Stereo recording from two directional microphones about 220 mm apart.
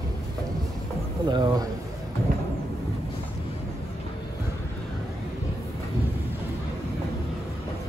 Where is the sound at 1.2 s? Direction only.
20° right (ahead or behind).